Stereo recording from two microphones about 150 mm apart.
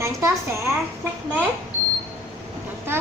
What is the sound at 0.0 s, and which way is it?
Speech, 20° right (ahead or behind).